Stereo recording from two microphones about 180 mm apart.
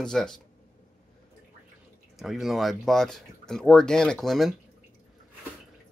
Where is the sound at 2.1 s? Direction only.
Centre (ahead or behind).